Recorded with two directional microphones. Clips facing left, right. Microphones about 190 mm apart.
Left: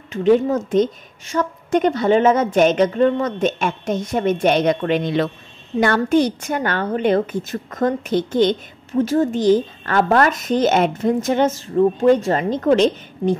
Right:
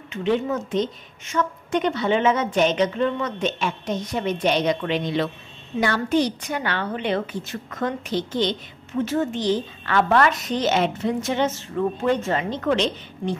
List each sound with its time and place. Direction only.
0.1 s a woman's voice: 40° left (ahead or behind)